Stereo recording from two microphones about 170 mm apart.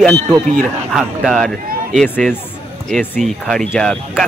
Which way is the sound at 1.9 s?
10° left (ahead or behind).